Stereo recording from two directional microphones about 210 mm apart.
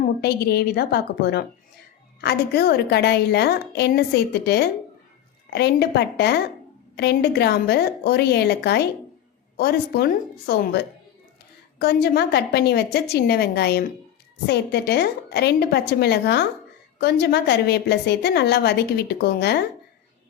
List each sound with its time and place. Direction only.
0.0 s a woman's voice: 50° left (ahead or behind)